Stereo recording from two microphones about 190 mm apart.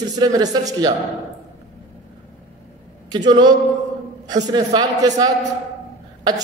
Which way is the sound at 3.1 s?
20° right (ahead or behind).